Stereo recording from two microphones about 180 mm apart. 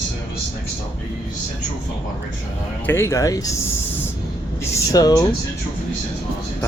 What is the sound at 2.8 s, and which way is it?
Speech, 15° left (ahead or behind).